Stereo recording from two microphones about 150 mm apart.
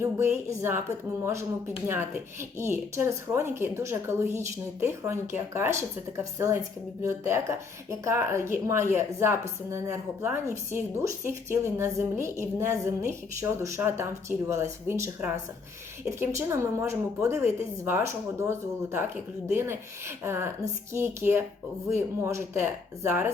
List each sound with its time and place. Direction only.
0.0 s speech: 20° right (ahead or behind)